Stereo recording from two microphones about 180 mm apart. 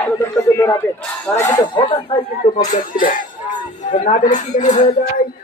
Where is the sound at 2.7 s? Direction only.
50° left (ahead or behind).